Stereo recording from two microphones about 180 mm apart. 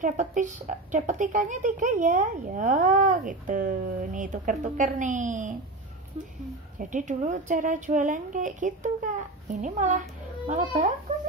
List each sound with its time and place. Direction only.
0.0 s a woman's voice: 45° right (ahead or behind)
6.8 s a woman's voice: 45° right (ahead or behind)